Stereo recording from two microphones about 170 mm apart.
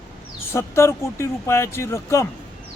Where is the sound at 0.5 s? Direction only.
15° left (ahead or behind).